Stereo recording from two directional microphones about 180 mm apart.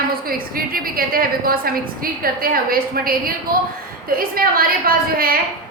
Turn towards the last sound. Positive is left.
turn(degrees=-55)  # may be behind; listen again after turning